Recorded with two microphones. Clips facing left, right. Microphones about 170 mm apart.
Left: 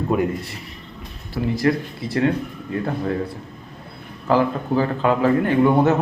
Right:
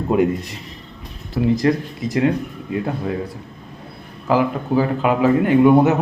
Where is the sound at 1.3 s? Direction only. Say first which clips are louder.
Right 3 dB; 20° right (ahead or behind).